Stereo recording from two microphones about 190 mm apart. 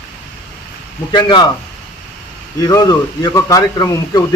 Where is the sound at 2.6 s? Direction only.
20° left (ahead or behind).